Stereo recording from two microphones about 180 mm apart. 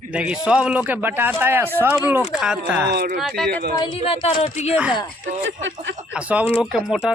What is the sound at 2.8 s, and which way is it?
Speech, 65° right (ahead or behind).